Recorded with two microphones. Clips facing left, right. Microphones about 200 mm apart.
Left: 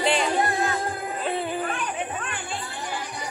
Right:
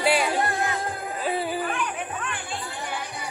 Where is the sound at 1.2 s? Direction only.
5° right (ahead or behind).